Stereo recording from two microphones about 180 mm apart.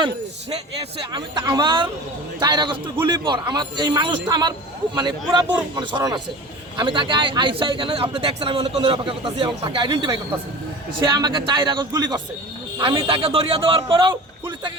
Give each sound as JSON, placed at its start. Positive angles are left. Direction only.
{"t": 0.9, "sound": "a man's voice", "side_deg": -25}